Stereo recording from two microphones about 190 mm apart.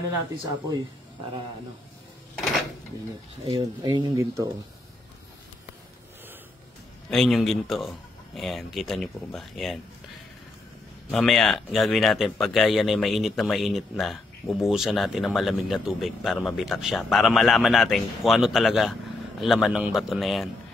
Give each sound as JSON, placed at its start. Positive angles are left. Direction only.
{"t": 3.5, "sound": "speech", "side_deg": -20}
{"t": 7.1, "sound": "speech", "side_deg": 0}
{"t": 11.1, "sound": "speech", "side_deg": 0}